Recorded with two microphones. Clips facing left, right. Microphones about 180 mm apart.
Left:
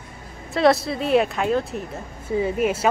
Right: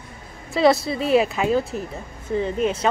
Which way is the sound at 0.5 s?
Centre (ahead or behind).